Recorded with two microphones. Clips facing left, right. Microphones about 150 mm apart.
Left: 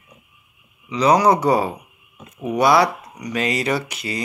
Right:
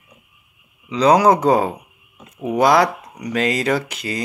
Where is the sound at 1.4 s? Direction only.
50° right (ahead or behind).